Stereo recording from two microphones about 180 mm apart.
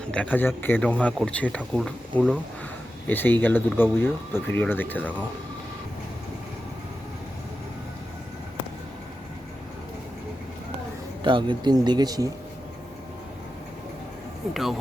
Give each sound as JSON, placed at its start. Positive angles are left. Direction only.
{"t": 0.0, "sound": "speech", "side_deg": 5}
{"t": 3.1, "sound": "speech", "side_deg": 10}
{"t": 11.2, "sound": "speech", "side_deg": -25}
{"t": 14.5, "sound": "speech", "side_deg": 0}